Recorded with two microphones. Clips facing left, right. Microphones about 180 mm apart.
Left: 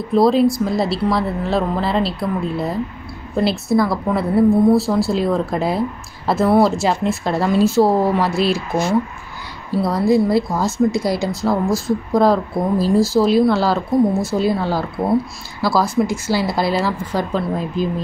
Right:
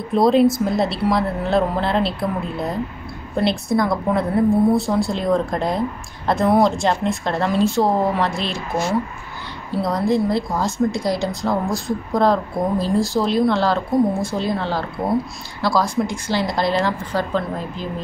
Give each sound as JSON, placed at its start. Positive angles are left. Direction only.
{"t": 0.1, "sound": "a woman's voice", "side_deg": 0}
{"t": 9.8, "sound": "speech", "side_deg": 10}